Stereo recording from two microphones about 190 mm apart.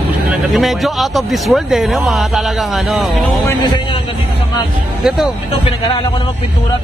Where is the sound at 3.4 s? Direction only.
15° left (ahead or behind).